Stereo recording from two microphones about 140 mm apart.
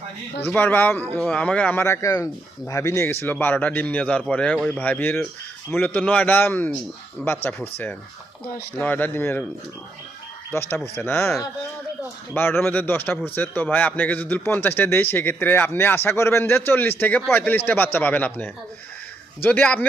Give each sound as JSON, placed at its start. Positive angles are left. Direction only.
{"t": 0.4, "sound": "a man's voice", "side_deg": 15}
{"t": 10.5, "sound": "a man's voice", "side_deg": 15}